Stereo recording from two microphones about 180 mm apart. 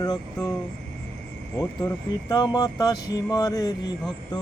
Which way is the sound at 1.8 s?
20° left (ahead or behind).